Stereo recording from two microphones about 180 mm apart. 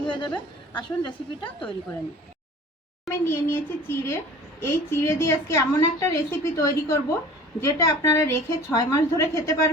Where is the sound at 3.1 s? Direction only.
15° left (ahead or behind).